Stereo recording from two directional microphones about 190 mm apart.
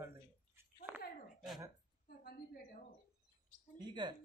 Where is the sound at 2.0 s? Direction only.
55° left (ahead or behind).